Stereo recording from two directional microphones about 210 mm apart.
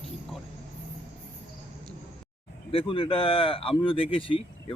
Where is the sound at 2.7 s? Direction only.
25° left (ahead or behind).